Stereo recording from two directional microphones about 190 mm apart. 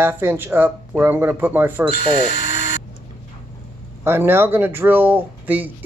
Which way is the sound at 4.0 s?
10° right (ahead or behind).